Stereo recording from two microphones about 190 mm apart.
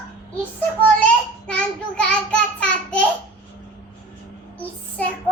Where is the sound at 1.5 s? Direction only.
5° left (ahead or behind).